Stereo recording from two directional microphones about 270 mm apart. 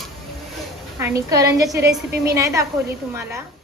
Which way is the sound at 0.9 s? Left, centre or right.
Centre.